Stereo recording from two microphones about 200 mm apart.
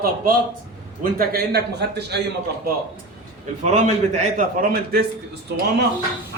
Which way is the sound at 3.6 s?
35° right (ahead or behind).